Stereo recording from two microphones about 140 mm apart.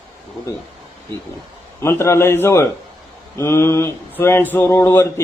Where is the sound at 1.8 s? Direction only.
20° left (ahead or behind).